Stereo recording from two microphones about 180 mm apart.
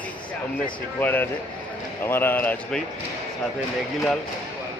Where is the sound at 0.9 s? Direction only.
10° left (ahead or behind).